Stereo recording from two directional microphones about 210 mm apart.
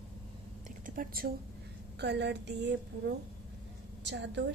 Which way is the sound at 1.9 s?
55° right (ahead or behind).